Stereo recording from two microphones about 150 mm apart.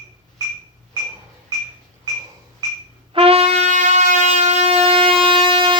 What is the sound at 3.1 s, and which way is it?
Shofar, 40° right (ahead or behind).